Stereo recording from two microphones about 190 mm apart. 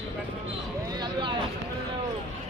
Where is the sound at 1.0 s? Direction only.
25° right (ahead or behind).